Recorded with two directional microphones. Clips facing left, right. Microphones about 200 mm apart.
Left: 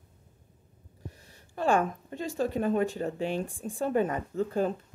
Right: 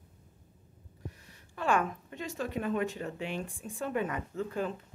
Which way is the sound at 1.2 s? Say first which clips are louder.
Left 5 dB; 35° left (ahead or behind).